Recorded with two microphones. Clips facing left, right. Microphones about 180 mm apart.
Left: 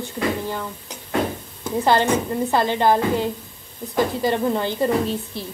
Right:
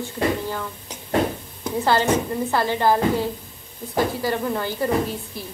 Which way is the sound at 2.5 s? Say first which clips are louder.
Left 2 dB; 20° left (ahead or behind).